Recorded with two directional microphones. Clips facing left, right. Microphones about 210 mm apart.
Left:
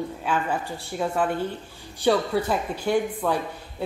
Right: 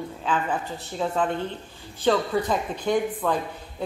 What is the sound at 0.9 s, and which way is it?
Speech, 10° left (ahead or behind).